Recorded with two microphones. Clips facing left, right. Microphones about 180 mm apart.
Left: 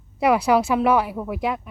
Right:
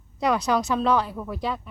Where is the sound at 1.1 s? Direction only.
20° left (ahead or behind).